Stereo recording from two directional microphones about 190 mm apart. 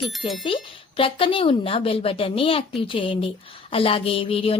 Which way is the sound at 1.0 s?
30° left (ahead or behind).